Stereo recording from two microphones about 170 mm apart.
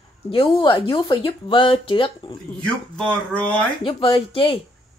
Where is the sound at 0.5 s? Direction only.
30° left (ahead or behind).